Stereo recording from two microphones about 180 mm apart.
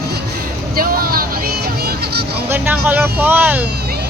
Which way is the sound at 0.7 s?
55° right (ahead or behind).